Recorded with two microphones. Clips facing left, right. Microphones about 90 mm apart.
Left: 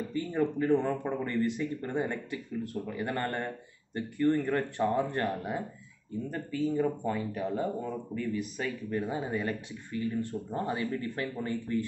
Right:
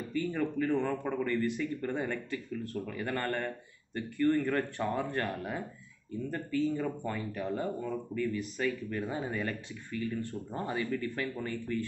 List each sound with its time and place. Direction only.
0.1 s speech: 25° left (ahead or behind)